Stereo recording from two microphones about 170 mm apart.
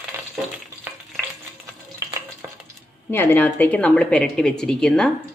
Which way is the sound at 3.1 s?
10° left (ahead or behind).